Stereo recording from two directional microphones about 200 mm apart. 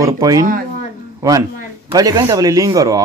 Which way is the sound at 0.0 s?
15° right (ahead or behind).